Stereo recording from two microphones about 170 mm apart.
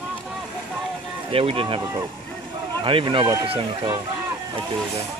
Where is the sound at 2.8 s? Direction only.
30° right (ahead or behind).